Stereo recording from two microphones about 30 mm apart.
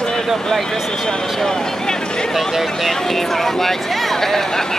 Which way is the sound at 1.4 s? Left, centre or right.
Centre.